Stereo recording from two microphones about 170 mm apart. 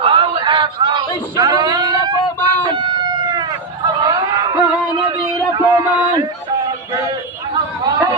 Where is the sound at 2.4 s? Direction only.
25° right (ahead or behind).